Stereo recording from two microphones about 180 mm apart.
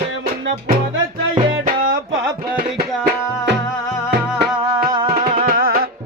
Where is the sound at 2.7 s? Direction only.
65° right (ahead or behind).